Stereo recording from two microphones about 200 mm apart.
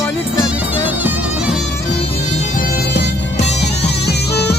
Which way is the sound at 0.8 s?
5° right (ahead or behind).